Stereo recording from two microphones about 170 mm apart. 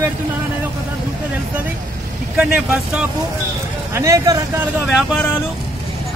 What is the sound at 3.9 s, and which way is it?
Speech, 20° right (ahead or behind).